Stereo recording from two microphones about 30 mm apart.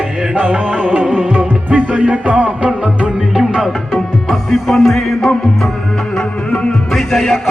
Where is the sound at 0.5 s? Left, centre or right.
Right.